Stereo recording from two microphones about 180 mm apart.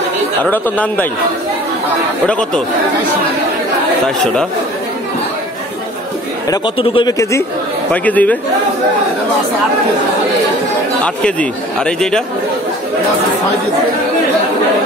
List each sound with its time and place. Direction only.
0.4 s speech: 10° left (ahead or behind)
2.2 s speech: 5° left (ahead or behind)
6.5 s speech: 30° left (ahead or behind)
7.9 s speech: 10° left (ahead or behind)
11.2 s speech: 5° left (ahead or behind)